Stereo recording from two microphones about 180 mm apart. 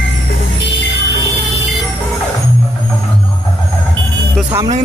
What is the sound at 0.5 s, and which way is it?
Music, 75° left (ahead or behind).